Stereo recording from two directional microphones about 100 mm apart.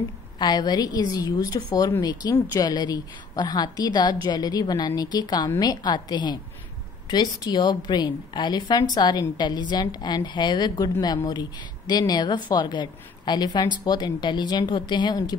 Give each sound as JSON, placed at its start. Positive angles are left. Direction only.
{"t": 0.4, "sound": "a woman's voice", "side_deg": 45}